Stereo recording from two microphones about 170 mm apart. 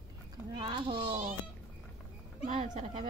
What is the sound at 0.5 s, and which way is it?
Speech, 30° right (ahead or behind).